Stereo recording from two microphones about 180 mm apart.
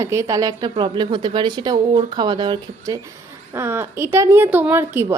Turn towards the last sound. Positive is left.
turn(degrees=-15)  # may be behind; listen again after turning